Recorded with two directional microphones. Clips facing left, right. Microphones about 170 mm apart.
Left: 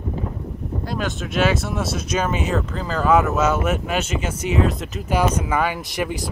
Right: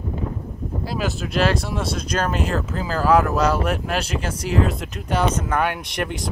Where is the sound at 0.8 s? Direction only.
5° right (ahead or behind).